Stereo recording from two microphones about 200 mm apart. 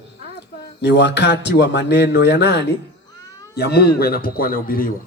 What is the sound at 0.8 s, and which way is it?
A man's voice, 60° left (ahead or behind).